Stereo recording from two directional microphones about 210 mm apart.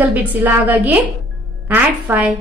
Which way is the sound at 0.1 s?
10° right (ahead or behind).